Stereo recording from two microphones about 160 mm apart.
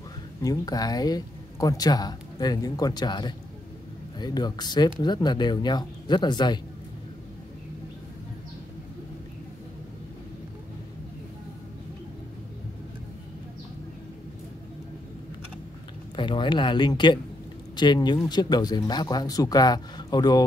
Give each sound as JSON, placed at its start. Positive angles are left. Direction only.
{"t": 0.4, "sound": "speech", "side_deg": 25}
{"t": 16.2, "sound": "speech", "side_deg": 30}